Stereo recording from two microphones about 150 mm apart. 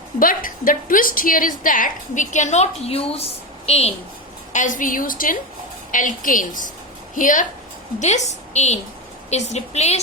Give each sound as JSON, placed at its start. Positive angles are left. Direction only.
{"t": 0.2, "sound": "a woman's voice", "side_deg": 70}
{"t": 4.5, "sound": "a woman's voice", "side_deg": 60}